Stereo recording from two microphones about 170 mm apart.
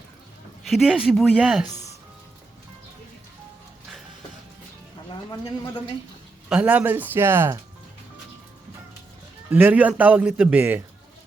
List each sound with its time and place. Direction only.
0.7 s speech: 5° right (ahead or behind)
1.6 s speech: 45° left (ahead or behind)
6.5 s speech: 5° right (ahead or behind)
9.5 s speech: 10° right (ahead or behind)